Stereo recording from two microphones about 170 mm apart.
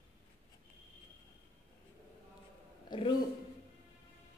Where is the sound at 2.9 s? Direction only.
25° left (ahead or behind).